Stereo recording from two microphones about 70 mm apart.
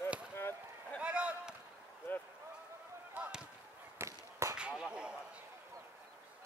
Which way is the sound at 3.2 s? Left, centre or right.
Right.